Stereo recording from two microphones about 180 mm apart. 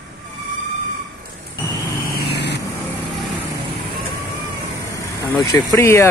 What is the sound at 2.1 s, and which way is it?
Vehicle, 65° left (ahead or behind).